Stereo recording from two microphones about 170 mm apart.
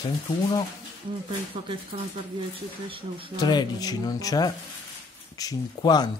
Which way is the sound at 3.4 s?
25° left (ahead or behind).